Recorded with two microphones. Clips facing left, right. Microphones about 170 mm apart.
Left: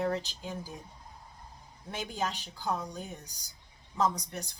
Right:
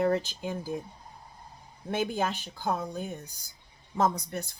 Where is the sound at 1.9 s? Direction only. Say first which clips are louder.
Right 6 dB; 55° right (ahead or behind).